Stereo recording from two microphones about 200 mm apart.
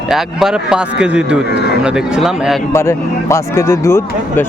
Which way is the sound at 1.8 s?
5° right (ahead or behind).